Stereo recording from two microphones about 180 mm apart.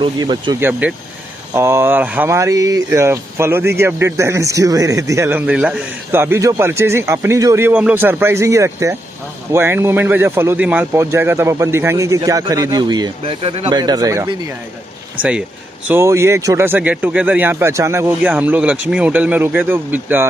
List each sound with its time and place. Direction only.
0.0 s speech: 25° right (ahead or behind)
0.7 s speech: 10° right (ahead or behind)
15.9 s speech: 15° right (ahead or behind)